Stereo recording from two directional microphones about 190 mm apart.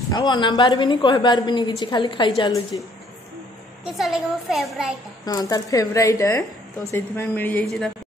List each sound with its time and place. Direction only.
0.1 s a woman's voice: 25° left (ahead or behind)
3.9 s speech: centre (ahead or behind)
5.2 s speech: 20° left (ahead or behind)